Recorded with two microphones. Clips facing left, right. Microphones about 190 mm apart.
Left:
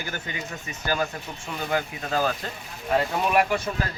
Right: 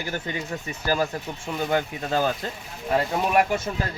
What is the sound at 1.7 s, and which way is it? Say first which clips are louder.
Speech: right 1 dB; 30° right (ahead or behind).